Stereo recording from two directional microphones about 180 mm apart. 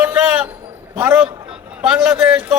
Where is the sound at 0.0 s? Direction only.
5° right (ahead or behind).